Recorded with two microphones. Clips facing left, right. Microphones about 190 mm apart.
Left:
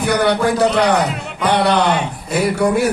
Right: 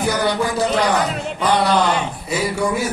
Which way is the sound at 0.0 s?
65° left (ahead or behind).